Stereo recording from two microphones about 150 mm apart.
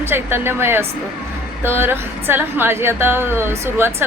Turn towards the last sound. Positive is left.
turn(degrees=-15)  # may be behind; listen again after turning